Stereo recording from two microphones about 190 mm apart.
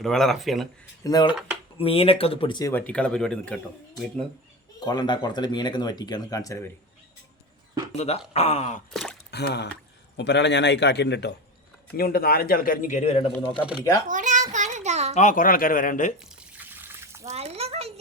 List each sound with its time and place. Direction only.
0.0 s speech: centre (ahead or behind)
1.0 s speech: 20° left (ahead or behind)
2.7 s speech: 5° left (ahead or behind)
4.9 s speech: 25° left (ahead or behind)
7.9 s speech: 35° left (ahead or behind)
8.9 s speech: centre (ahead or behind)
9.3 s a man's voice: 60° left (ahead or behind)
11.9 s speech: 50° left (ahead or behind); by 13.3 s 30° left (ahead or behind)
14.1 s child singing: 40° right (ahead or behind)
15.1 s speech: 40° left (ahead or behind)
16.6 s water: 10° right (ahead or behind)
17.3 s a sound: 35° right (ahead or behind)